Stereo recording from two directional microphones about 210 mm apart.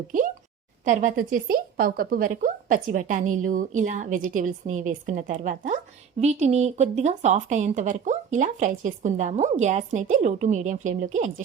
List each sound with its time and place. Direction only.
0.9 s speech: 40° right (ahead or behind)